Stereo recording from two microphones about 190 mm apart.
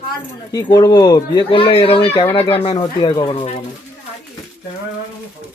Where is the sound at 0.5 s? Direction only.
20° left (ahead or behind).